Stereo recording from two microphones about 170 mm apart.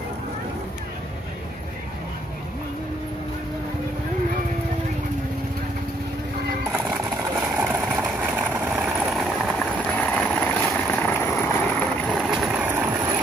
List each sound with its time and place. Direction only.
7.3 s vehicle: 10° right (ahead or behind)
9.9 s vehicle: 10° left (ahead or behind)
11.8 s vehicle: 5° left (ahead or behind)